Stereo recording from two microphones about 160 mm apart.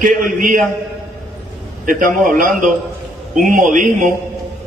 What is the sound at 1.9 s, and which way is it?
A man's voice, 60° right (ahead or behind).